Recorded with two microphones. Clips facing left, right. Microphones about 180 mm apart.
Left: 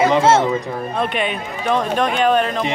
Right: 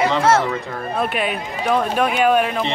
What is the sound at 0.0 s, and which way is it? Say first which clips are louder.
Speech: left 3 dB; 25° left (ahead or behind).